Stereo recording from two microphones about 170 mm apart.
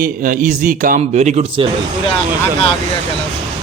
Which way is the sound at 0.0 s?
50° right (ahead or behind).